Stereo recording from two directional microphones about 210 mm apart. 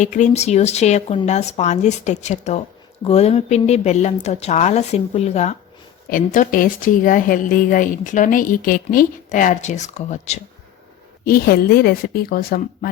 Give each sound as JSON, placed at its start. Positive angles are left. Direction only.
{"t": 0.0, "sound": "speech", "side_deg": 35}
{"t": 11.3, "sound": "a woman's voice", "side_deg": 45}